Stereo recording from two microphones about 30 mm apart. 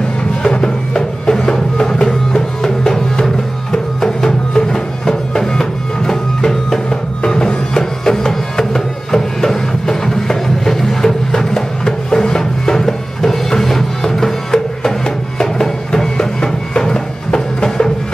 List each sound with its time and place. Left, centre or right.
0.6 s music: centre
1.4 s music: left
1.9 s music: centre